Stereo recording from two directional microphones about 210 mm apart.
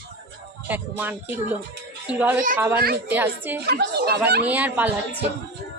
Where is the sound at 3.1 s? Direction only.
10° right (ahead or behind).